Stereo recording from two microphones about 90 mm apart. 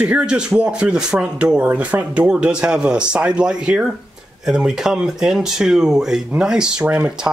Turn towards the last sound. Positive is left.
turn(degrees=-15)  # may be behind; listen again after turning